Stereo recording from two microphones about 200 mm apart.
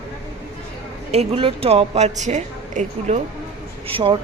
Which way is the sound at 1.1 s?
30° right (ahead or behind).